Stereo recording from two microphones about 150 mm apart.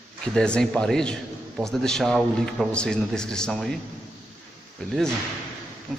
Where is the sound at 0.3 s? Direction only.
5° left (ahead or behind).